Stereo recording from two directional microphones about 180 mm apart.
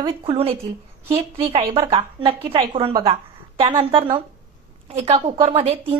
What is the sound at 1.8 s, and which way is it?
A woman's voice, 30° right (ahead or behind).